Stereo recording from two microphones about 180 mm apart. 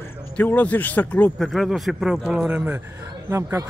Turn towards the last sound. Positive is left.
turn(degrees=-15)  # may be behind; listen again after turning